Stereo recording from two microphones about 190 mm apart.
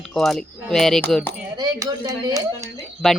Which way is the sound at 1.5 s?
20° right (ahead or behind).